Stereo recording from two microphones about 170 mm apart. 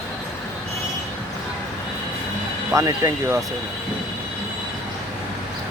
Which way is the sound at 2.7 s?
20° right (ahead or behind).